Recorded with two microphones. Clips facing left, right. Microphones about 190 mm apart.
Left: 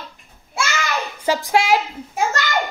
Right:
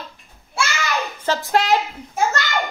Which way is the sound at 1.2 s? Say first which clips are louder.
Left 1 dB; 10° left (ahead or behind).